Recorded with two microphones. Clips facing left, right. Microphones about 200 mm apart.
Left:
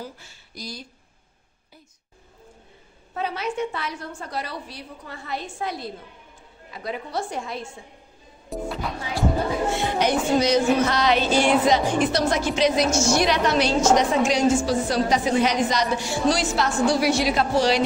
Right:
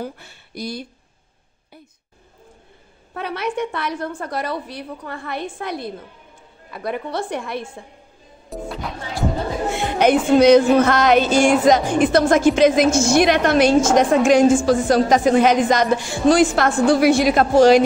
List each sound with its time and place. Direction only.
0.0 s a woman's voice: 60° right (ahead or behind)
3.2 s a woman's voice: 60° right (ahead or behind)
8.5 s music: centre (ahead or behind)
9.8 s a sound: 55° right (ahead or behind)
10.4 s speech: 55° right (ahead or behind)